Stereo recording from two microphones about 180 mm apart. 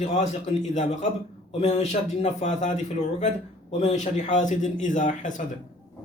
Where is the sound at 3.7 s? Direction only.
40° left (ahead or behind).